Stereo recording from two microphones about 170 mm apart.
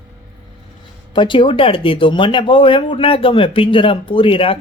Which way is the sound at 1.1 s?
30° left (ahead or behind).